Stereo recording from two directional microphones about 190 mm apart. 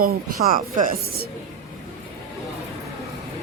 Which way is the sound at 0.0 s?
50° right (ahead or behind).